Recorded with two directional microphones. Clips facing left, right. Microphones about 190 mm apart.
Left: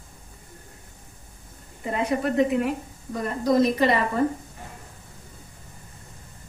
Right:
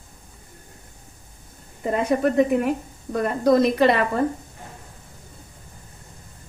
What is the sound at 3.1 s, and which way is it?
Speech, 65° right (ahead or behind).